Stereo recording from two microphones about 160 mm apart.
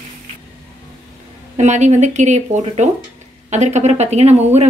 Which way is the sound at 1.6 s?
45° right (ahead or behind).